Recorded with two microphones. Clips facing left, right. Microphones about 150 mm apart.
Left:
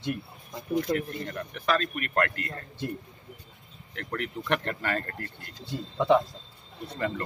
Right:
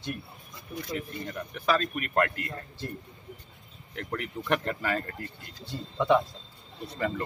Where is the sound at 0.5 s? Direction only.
75° left (ahead or behind).